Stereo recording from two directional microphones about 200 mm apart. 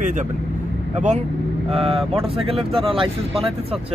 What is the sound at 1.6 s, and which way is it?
Speech, 30° right (ahead or behind).